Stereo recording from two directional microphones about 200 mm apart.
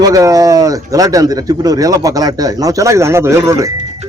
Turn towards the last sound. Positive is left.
turn(degrees=-15)  # may be behind; listen again after turning